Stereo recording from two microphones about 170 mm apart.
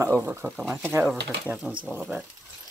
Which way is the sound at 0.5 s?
Centre (ahead or behind).